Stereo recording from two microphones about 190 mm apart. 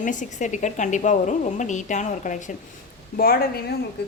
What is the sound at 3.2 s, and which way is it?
Speech, 50° left (ahead or behind).